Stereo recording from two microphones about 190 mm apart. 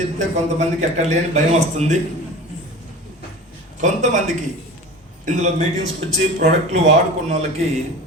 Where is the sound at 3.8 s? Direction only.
40° right (ahead or behind).